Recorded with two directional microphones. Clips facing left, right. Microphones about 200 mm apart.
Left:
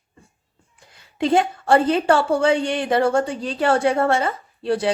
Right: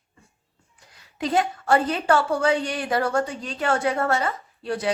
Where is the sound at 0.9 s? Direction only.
25° left (ahead or behind).